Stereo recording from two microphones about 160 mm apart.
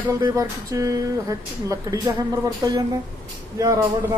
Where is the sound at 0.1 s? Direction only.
20° right (ahead or behind).